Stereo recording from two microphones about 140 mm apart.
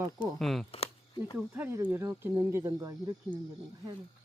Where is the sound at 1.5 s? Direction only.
15° right (ahead or behind).